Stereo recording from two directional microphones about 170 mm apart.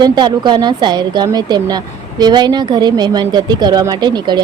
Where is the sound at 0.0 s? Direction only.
25° right (ahead or behind).